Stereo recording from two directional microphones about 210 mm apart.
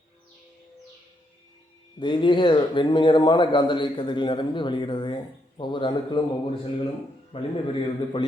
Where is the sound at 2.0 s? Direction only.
20° left (ahead or behind).